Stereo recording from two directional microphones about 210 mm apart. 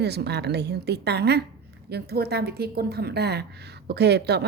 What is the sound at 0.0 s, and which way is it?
A woman's voice, 50° right (ahead or behind).